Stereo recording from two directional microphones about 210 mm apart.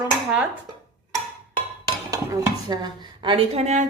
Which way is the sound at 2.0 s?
15° right (ahead or behind).